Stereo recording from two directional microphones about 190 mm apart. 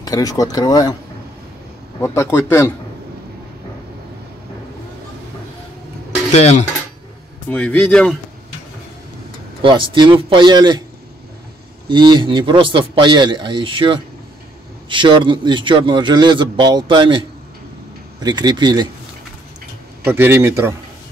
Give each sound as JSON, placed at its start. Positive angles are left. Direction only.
{"t": 0.0, "sound": "speech", "side_deg": 20}
{"t": 2.0, "sound": "speech", "side_deg": 15}
{"t": 7.4, "sound": "speech", "side_deg": 5}
{"t": 9.6, "sound": "a man's voice", "side_deg": -25}
{"t": 11.9, "sound": "a man's voice", "side_deg": -25}
{"t": 18.2, "sound": "a man's voice", "side_deg": -20}
{"t": 20.1, "sound": "a man's voice", "side_deg": -10}